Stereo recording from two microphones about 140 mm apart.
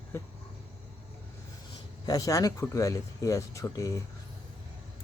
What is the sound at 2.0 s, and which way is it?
Speech, 25° left (ahead or behind).